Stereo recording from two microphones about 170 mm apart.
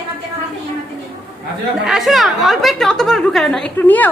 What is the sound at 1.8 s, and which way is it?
A woman's voice, centre (ahead or behind).